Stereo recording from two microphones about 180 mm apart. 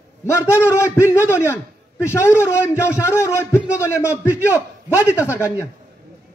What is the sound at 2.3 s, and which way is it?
Speech, 10° right (ahead or behind).